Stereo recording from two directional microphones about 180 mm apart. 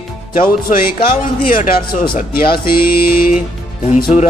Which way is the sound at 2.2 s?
55° left (ahead or behind).